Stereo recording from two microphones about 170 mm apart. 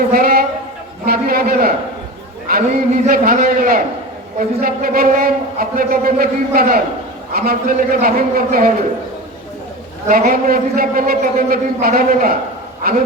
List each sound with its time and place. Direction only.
0.1 s a sound: 60° right (ahead or behind)
1.0 s a man's voice: 60° right (ahead or behind)
10.1 s a man's voice: 55° right (ahead or behind)